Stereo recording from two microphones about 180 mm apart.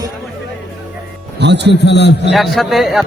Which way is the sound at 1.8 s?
70° left (ahead or behind).